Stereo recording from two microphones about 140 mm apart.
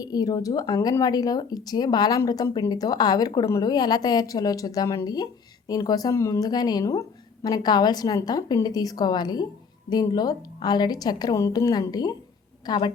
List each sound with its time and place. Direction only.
0.0 s a woman's voice: 30° left (ahead or behind)